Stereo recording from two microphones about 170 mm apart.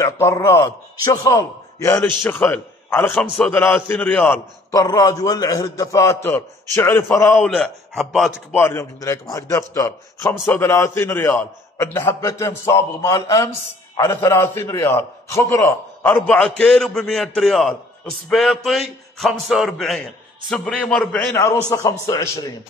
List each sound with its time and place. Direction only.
0.0 s a man's voice: 15° left (ahead or behind)
4.7 s a man's voice: 20° left (ahead or behind); by 8.3 s centre (ahead or behind)
8.5 s a man's voice: 15° left (ahead or behind)